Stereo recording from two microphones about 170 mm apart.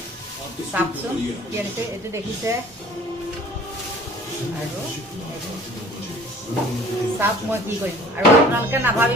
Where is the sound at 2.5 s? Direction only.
15° right (ahead or behind).